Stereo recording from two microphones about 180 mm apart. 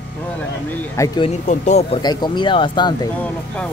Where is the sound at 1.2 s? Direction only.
40° left (ahead or behind).